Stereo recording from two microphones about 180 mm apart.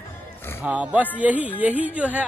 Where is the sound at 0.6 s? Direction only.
10° right (ahead or behind).